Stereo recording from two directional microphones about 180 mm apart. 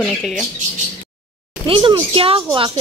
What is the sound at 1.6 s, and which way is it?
Speech, 30° right (ahead or behind).